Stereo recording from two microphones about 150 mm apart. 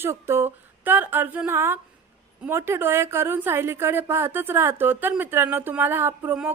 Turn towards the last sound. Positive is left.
turn(degrees=-15)  # may be behind; listen again after turning